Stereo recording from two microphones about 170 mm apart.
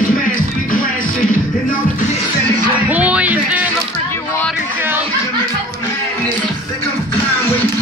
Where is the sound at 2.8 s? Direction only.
10° right (ahead or behind).